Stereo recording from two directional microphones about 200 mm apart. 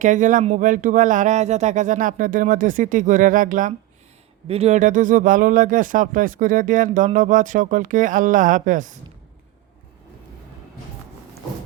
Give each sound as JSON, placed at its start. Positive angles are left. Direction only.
{"t": 0.0, "sound": "speech", "side_deg": -40}
{"t": 4.4, "sound": "speech", "side_deg": -30}